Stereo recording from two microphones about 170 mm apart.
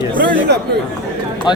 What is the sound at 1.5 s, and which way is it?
Speech, 25° left (ahead or behind).